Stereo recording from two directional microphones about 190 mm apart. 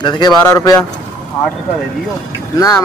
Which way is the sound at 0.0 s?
20° left (ahead or behind).